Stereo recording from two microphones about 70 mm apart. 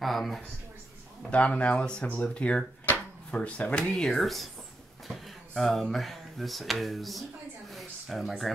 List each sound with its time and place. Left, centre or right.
0.0 s speech: centre
1.3 s speech: centre
5.5 s speech: centre
7.7 s a sound: centre